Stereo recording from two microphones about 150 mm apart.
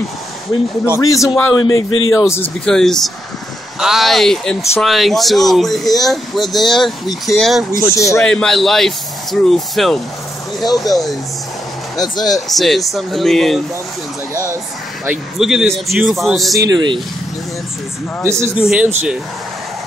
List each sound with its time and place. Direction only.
0.8 s speech: 20° left (ahead or behind)
2.6 s speech: 5° left (ahead or behind)
7.8 s speech: 20° left (ahead or behind)
8.3 s speech: 5° left (ahead or behind)
12.0 s speech: 25° left (ahead or behind)
12.4 s speech: centre (ahead or behind)
14.3 s speech: 20° right (ahead or behind)
15.0 s speech: 5° right (ahead or behind)
16.5 s speech: 25° right (ahead or behind)
18.2 s a man's voice: 15° right (ahead or behind)
18.6 s a man's voice: 5° right (ahead or behind)